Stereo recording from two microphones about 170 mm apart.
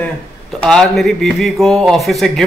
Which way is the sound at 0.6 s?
5° left (ahead or behind).